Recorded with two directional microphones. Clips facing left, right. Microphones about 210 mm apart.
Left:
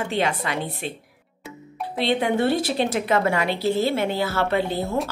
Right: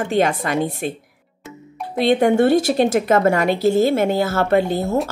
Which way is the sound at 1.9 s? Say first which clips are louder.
Right 7 dB; 45° right (ahead or behind).